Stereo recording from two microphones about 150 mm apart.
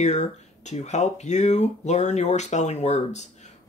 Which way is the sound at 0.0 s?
50° left (ahead or behind).